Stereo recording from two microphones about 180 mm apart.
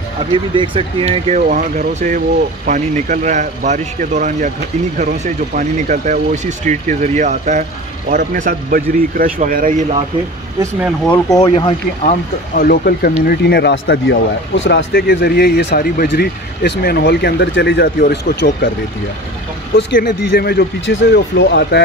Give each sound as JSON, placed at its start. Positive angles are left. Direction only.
{"t": 0.3, "sound": "speech", "side_deg": -25}
{"t": 11.2, "sound": "speech", "side_deg": 20}
{"t": 11.5, "sound": "speech", "side_deg": 35}
{"t": 12.5, "sound": "speech", "side_deg": 55}
{"t": 19.9, "sound": "speech", "side_deg": 60}